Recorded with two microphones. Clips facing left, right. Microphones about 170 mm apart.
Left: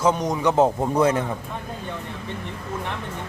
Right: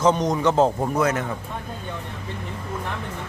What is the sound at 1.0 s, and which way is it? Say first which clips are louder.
Speech: left 3 dB; 30° left (ahead or behind).